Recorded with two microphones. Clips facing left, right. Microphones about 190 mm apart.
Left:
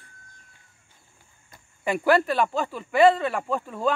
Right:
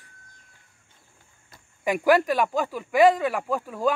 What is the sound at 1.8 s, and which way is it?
Speech, 10° right (ahead or behind).